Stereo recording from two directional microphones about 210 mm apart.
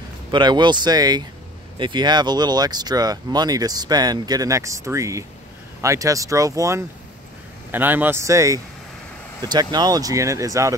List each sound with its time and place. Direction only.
0.3 s speech: 20° right (ahead or behind)